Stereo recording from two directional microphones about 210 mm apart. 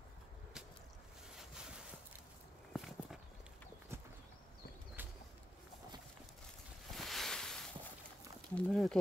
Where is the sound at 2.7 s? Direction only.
Centre (ahead or behind).